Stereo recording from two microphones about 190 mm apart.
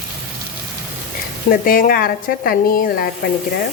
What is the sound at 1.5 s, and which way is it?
Speech, 50° left (ahead or behind).